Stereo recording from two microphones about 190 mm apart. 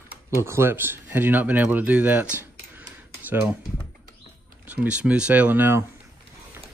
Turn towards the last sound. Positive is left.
turn(degrees=-10)  # may be behind; listen again after turning